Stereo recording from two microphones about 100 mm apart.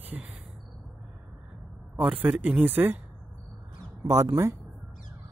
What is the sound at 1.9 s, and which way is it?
Speech, 15° right (ahead or behind).